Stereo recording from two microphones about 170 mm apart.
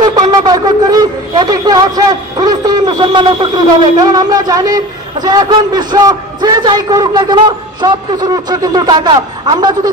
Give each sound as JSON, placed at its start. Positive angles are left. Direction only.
{"t": 0.0, "sound": "speech", "side_deg": -25}